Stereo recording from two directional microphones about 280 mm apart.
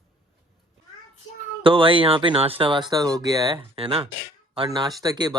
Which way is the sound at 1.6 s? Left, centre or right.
Centre.